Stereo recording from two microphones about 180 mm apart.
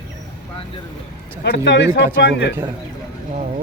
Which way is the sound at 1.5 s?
75° left (ahead or behind).